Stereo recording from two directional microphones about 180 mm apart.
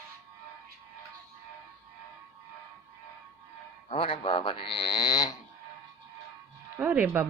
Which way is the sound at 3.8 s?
30° left (ahead or behind).